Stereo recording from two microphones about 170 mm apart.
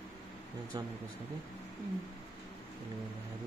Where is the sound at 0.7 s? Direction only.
25° right (ahead or behind).